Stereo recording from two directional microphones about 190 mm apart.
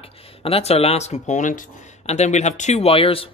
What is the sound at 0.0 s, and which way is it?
A man's voice, 30° left (ahead or behind).